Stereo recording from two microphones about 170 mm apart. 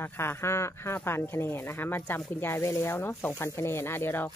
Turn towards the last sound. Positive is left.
turn(degrees=10)  # may be behind; listen again after turning